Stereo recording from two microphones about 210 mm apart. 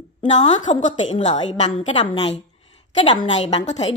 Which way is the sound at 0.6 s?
35° left (ahead or behind).